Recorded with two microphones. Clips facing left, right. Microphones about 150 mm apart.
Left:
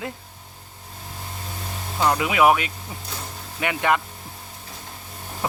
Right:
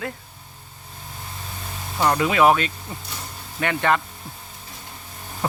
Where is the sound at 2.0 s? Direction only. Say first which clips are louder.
Right 1 dB; 5° left (ahead or behind).